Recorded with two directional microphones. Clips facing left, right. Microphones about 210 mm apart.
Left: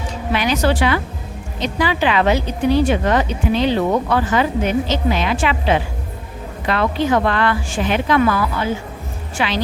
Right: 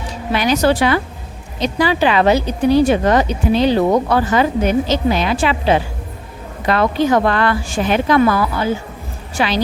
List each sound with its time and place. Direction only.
0.3 s a woman's voice: 40° right (ahead or behind)